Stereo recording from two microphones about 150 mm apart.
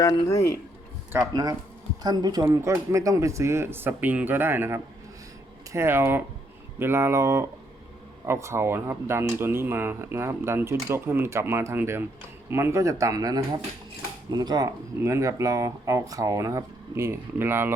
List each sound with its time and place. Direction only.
0.0 s speech: 25° left (ahead or behind)
1.3 s speech: 25° right (ahead or behind)